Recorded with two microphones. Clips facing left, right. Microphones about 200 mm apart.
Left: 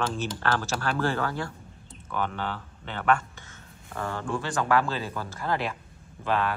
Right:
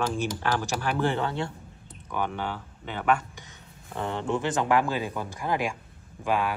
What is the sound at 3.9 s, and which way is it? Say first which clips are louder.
Speech: right 3 dB; 20° right (ahead or behind).